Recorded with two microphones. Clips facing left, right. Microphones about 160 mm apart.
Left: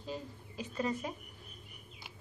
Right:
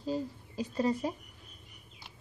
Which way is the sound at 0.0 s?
35° right (ahead or behind).